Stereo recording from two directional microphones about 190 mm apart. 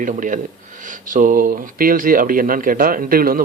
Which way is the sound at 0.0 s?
45° right (ahead or behind).